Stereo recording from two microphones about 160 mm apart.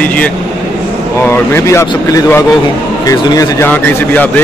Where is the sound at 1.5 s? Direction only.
15° left (ahead or behind).